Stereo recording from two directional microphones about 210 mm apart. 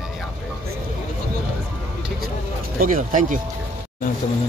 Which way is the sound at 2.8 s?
40° right (ahead or behind).